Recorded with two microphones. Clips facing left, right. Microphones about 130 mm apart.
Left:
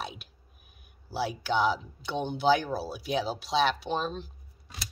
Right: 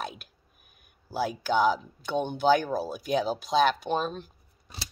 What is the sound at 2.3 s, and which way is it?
Speech, 5° left (ahead or behind).